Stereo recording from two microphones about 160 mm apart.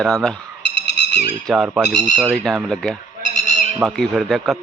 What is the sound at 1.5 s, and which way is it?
A man's voice, centre (ahead or behind).